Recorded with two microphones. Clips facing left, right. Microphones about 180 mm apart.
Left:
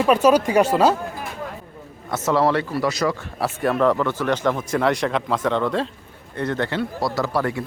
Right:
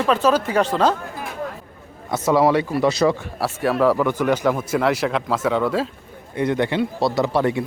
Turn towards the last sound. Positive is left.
turn(degrees=-20)  # may be behind; listen again after turning